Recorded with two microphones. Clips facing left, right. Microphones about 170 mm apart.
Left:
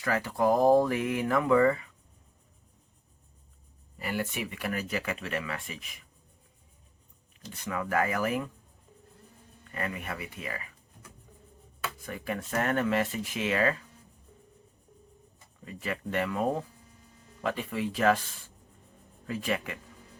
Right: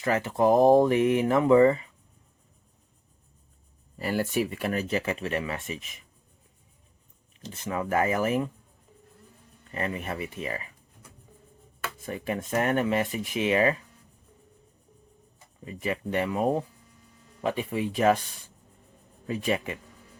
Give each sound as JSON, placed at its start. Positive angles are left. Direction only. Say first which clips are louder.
{"t": 0.0, "sound": "speech", "louder": "right 4 dB", "side_deg": -20}
{"t": 3.9, "sound": "speech", "louder": "right 6 dB", "side_deg": -35}
{"t": 7.4, "sound": "speech", "louder": "right 3 dB", "side_deg": -25}
{"t": 9.7, "sound": "speech", "louder": "right 4 dB", "side_deg": -25}
{"t": 11.9, "sound": "speech", "louder": "right 5 dB", "side_deg": -25}
{"t": 15.6, "sound": "speech", "louder": "right 4 dB", "side_deg": -20}
{"t": 19.3, "sound": "speech", "louder": "right 4 dB", "side_deg": -20}